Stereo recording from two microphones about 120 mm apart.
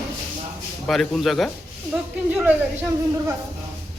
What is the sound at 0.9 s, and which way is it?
Speech, centre (ahead or behind).